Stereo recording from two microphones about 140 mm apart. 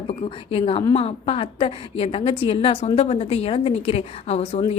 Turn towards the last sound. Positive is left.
turn(degrees=50)  # may be behind; listen again after turning